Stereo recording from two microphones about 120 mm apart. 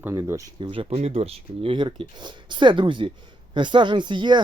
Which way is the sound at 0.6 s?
50° right (ahead or behind).